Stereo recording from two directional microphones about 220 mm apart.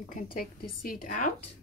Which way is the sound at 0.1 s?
40° left (ahead or behind).